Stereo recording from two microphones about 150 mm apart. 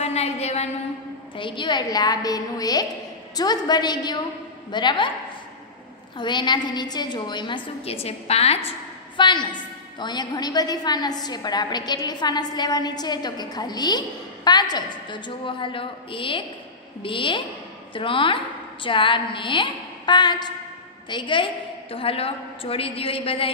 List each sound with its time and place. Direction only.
0.0 s a sound: 45° left (ahead or behind)
1.3 s a woman's voice: 35° left (ahead or behind)
6.1 s a woman's voice: 30° left (ahead or behind)
9.1 s a woman's voice: 30° left (ahead or behind)